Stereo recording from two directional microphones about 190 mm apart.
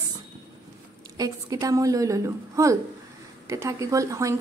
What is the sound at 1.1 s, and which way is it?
A woman's voice, 20° right (ahead or behind).